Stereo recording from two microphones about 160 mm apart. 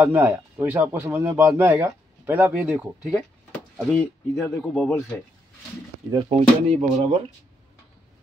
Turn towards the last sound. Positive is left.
turn(degrees=-40)  # may be behind; listen again after turning